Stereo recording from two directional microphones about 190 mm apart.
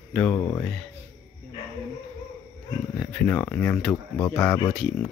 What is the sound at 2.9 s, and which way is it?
Speech, 10° left (ahead or behind).